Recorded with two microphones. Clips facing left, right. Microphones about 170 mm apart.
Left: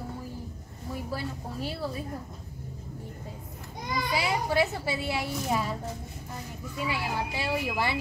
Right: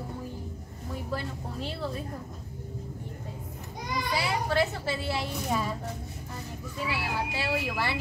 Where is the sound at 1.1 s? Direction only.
10° left (ahead or behind).